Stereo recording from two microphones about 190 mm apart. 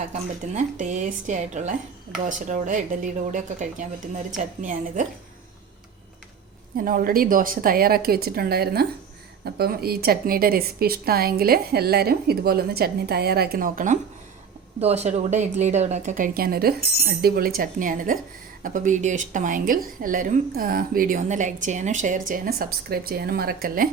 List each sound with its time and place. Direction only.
0.1 s speech: 40° right (ahead or behind)
6.7 s a woman's voice: 45° right (ahead or behind)
14.8 s a woman's voice: 35° right (ahead or behind)
22.3 s a woman's voice: 55° right (ahead or behind)